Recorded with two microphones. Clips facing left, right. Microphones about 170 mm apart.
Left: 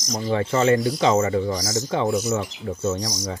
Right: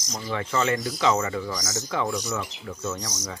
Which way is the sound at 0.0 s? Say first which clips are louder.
Left 7 dB; 15° left (ahead or behind).